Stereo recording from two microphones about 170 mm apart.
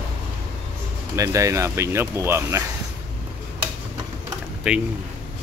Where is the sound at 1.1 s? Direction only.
20° right (ahead or behind).